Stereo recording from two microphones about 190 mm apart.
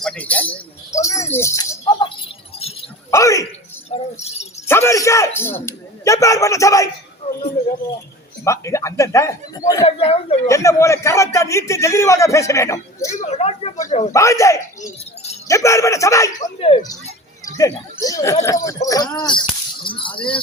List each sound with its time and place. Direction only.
0.0 s a man's voice: 5° left (ahead or behind)
0.9 s a sound: 15° left (ahead or behind)
3.8 s keys jangling: 35° left (ahead or behind)
4.7 s a man's voice: 15° left (ahead or behind)
7.2 s a sound: 30° left (ahead or behind)
8.4 s a man's voice: 15° left (ahead or behind)
9.8 s speech: 30° left (ahead or behind)
10.4 s a man's voice: 15° left (ahead or behind)
13.1 s speech: 35° left (ahead or behind)
14.1 s a man's voice: 15° left (ahead or behind)
16.6 s speech: 30° left (ahead or behind)
17.4 s a man's voice: 20° left (ahead or behind)